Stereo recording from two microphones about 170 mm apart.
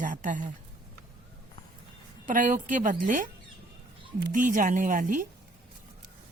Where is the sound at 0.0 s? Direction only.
50° right (ahead or behind).